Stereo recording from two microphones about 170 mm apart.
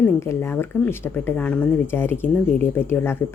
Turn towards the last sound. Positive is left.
turn(degrees=15)  # may be behind; listen again after turning